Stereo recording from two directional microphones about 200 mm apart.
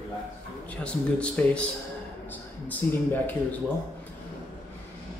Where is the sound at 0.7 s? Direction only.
5° left (ahead or behind).